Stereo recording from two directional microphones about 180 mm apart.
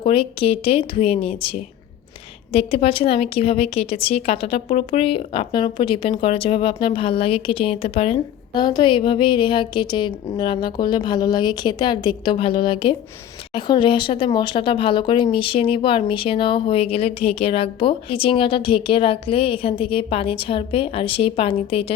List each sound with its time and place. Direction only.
0.0 s a woman's voice: 30° left (ahead or behind)